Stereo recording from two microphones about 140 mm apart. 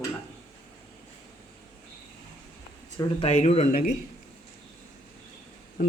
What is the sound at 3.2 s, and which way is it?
Speech, 50° left (ahead or behind).